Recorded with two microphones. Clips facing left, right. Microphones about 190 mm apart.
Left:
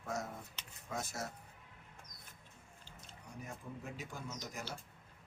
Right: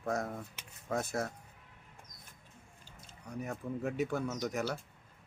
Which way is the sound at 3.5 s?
65° right (ahead or behind).